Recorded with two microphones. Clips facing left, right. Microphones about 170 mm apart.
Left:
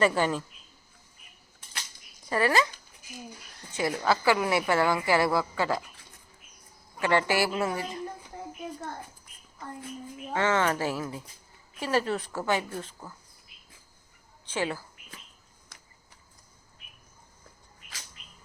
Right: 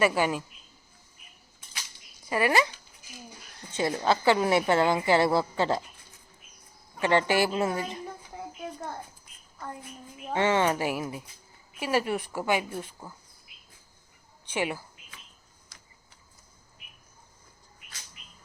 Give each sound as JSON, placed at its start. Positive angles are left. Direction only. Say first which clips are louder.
{"t": 0.0, "sound": "a woman's voice", "louder": "even", "side_deg": -10}
{"t": 2.3, "sound": "a woman's voice", "louder": "even", "side_deg": -15}
{"t": 3.7, "sound": "a woman's voice", "louder": "right 1 dB", "side_deg": -25}
{"t": 7.0, "sound": "a woman's voice", "louder": "right 1 dB", "side_deg": -20}
{"t": 10.3, "sound": "a woman's voice", "louder": "right 2 dB", "side_deg": -20}
{"t": 14.5, "sound": "a woman's voice", "louder": "even", "side_deg": -15}